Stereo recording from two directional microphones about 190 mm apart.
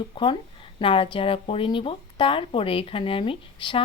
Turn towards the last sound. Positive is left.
turn(degrees=25)  # may be behind; listen again after turning